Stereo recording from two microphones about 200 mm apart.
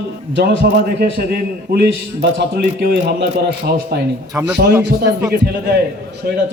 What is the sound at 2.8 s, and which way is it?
A man's voice, 55° right (ahead or behind).